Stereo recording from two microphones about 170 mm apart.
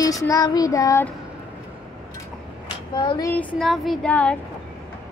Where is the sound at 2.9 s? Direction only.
25° left (ahead or behind).